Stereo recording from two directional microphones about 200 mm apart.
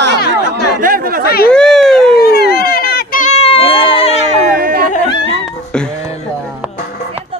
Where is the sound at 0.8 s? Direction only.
45° right (ahead or behind).